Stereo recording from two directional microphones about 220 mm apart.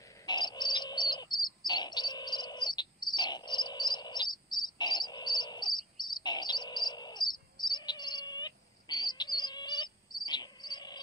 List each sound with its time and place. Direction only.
0.3 s bird: 20° left (ahead or behind)